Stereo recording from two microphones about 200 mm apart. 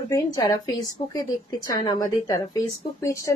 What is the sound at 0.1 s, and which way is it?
A woman's voice, 20° left (ahead or behind).